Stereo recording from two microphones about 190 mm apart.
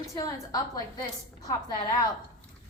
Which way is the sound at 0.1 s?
15° left (ahead or behind).